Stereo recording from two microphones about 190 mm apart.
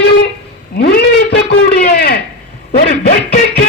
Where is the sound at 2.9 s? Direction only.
50° left (ahead or behind).